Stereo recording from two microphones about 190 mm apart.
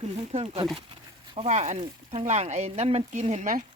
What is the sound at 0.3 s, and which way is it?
Speech, 35° right (ahead or behind).